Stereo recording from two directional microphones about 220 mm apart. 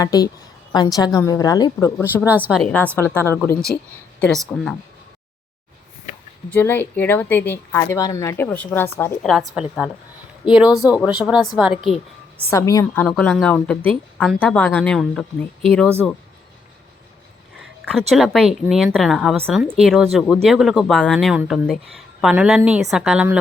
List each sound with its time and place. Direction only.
0.0 s a woman's voice: 15° left (ahead or behind)
2.2 s a woman's voice: 10° right (ahead or behind)
6.5 s a woman's voice: 10° left (ahead or behind)
12.5 s a woman's voice: 15° left (ahead or behind)
18.1 s a woman's voice: centre (ahead or behind)